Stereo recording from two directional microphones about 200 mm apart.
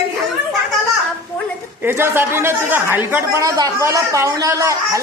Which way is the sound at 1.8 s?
10° right (ahead or behind).